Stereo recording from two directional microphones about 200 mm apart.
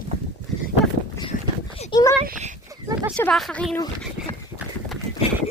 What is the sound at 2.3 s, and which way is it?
Speech, 35° right (ahead or behind).